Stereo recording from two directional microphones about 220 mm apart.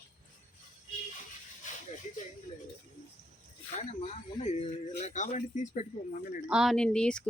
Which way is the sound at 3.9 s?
30° left (ahead or behind).